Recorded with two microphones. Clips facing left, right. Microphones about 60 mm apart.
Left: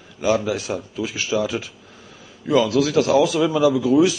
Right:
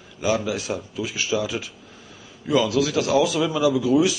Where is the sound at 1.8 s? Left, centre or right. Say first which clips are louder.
Left 1 dB; centre.